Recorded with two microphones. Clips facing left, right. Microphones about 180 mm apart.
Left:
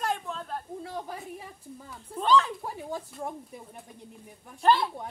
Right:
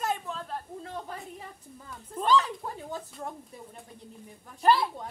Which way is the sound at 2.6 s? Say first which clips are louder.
Left 2 dB; 10° left (ahead or behind).